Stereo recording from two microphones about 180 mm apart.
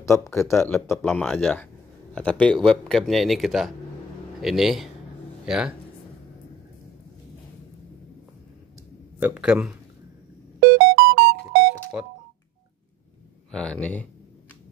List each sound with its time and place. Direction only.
0.0 s speech: 15° left (ahead or behind); by 5.7 s 5° right (ahead or behind)
9.2 s speech: 5° right (ahead or behind)
10.6 s music: 60° right (ahead or behind)
13.5 s speech: 5° left (ahead or behind)